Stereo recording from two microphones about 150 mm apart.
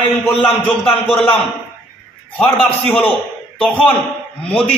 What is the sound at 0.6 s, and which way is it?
Speech, 40° left (ahead or behind).